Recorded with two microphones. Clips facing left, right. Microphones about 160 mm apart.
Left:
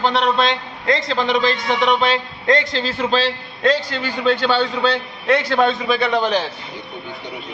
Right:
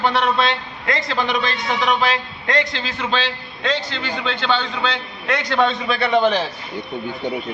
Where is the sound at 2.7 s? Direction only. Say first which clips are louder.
Left 4 dB; 35° left (ahead or behind).